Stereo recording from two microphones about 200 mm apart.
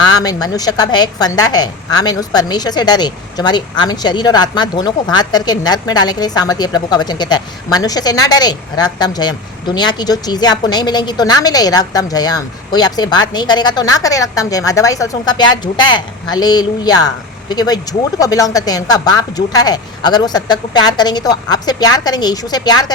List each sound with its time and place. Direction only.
0.0 s a woman's voice: 20° left (ahead or behind)